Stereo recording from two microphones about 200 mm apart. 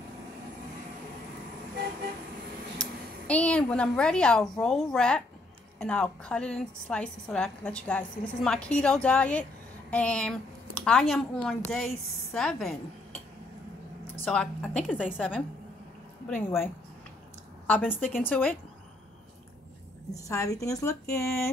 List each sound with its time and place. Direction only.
2.8 s a woman's voice: 5° left (ahead or behind)
14.2 s a woman's voice: 5° left (ahead or behind)
16.3 s a woman's voice: 10° left (ahead or behind)
17.6 s a woman's voice: 10° left (ahead or behind)
20.1 s a woman's voice: 15° left (ahead or behind)